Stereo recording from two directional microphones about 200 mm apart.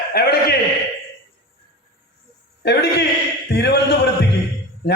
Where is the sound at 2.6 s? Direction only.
55° left (ahead or behind).